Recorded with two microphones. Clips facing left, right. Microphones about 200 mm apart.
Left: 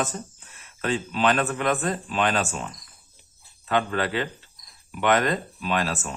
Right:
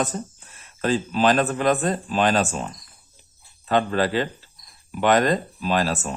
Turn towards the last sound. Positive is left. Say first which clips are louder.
# right 4 dB
turn(degrees=-35)  # may be behind; listen again after turning